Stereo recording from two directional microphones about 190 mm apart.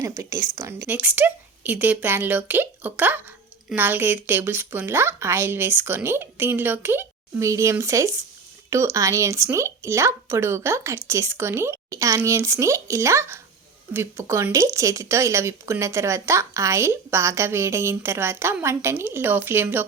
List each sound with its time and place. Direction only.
0.0 s speech: 15° right (ahead or behind)